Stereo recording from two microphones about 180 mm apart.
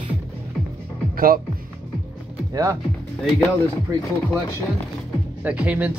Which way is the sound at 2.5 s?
15° right (ahead or behind).